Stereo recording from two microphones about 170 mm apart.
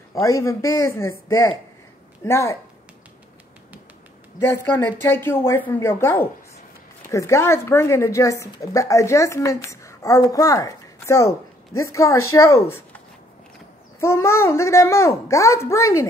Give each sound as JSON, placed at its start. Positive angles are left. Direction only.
{"t": 0.1, "sound": "a woman's voice", "side_deg": 20}
{"t": 4.4, "sound": "a woman's voice", "side_deg": 10}
{"t": 13.9, "sound": "a woman's voice", "side_deg": 15}